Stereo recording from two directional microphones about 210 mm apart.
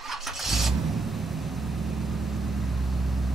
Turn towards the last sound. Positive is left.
turn(degrees=0)  # may be behind; listen again after turning